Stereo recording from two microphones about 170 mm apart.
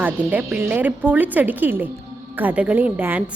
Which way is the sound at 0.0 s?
10° right (ahead or behind).